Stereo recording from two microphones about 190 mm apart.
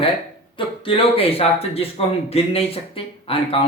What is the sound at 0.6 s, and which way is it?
Speech, 25° left (ahead or behind).